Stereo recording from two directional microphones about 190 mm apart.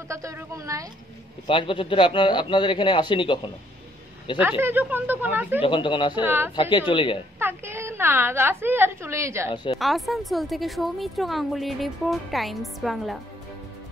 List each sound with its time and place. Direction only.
0.1 s a woman's voice: 15° right (ahead or behind)
1.5 s a man's voice: 25° left (ahead or behind)
4.4 s a woman's voice: 10° right (ahead or behind)
5.6 s a man's voice: 25° left (ahead or behind)
6.2 s a woman's voice: 10° right (ahead or behind)
6.5 s a man's voice: 25° left (ahead or behind)
7.3 s a woman's voice: 10° right (ahead or behind)
9.5 s a man's voice: 30° left (ahead or behind)
9.8 s speech: centre (ahead or behind)